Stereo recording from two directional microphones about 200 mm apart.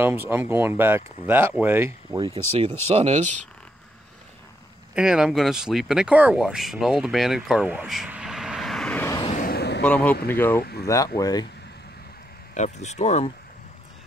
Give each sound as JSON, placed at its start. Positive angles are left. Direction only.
{"t": 0.0, "sound": "speech", "side_deg": -10}
{"t": 2.9, "sound": "speech", "side_deg": -30}
{"t": 4.9, "sound": "speech", "side_deg": -5}
{"t": 9.3, "sound": "vehicle", "side_deg": 50}
{"t": 9.8, "sound": "speech", "side_deg": 5}
{"t": 10.6, "sound": "speech", "side_deg": 55}
{"t": 11.1, "sound": "speech", "side_deg": 20}
{"t": 12.5, "sound": "speech", "side_deg": 35}